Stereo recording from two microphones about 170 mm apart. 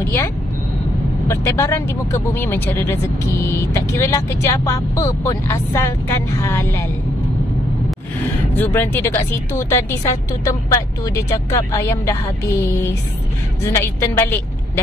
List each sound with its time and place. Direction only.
1.2 s speech: 15° left (ahead or behind)
8.5 s speech: 10° left (ahead or behind)